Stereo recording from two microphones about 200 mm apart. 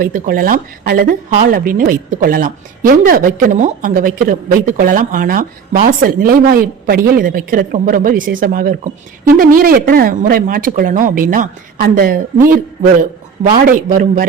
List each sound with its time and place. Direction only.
0.0 s a woman's voice: 45° right (ahead or behind)